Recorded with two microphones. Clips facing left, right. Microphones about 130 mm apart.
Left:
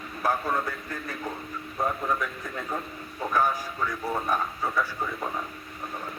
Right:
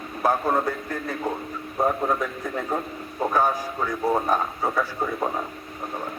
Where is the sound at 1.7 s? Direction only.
35° right (ahead or behind).